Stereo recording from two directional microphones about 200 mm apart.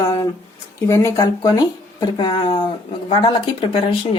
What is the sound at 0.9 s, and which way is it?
Speech, 15° left (ahead or behind).